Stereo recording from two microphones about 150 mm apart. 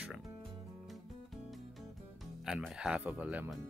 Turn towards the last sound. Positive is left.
turn(degrees=-10)  # may be behind; listen again after turning